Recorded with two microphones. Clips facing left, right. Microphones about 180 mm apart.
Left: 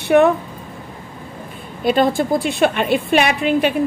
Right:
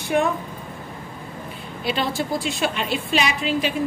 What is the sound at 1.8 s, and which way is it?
A woman's voice, 50° left (ahead or behind).